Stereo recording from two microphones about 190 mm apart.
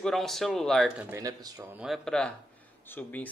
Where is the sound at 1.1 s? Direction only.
15° right (ahead or behind).